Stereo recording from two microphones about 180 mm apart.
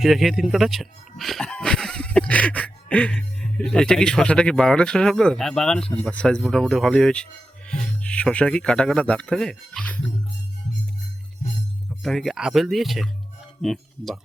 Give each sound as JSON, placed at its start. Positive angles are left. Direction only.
{"t": 0.0, "sound": "speech", "side_deg": 0}
{"t": 11.9, "sound": "speech", "side_deg": 0}